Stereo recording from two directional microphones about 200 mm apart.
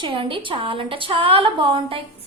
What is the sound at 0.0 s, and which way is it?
A woman's voice, 25° right (ahead or behind).